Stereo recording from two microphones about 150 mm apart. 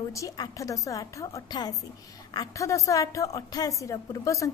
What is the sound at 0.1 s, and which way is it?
A woman's voice, 20° left (ahead or behind).